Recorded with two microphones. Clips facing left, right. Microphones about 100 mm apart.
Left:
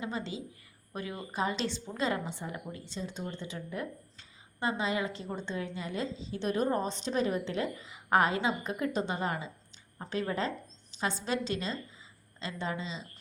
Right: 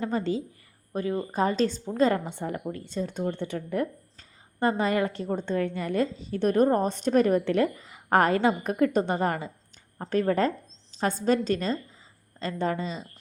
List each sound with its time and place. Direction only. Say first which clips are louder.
0.0 s speech: right 9 dB; 45° right (ahead or behind)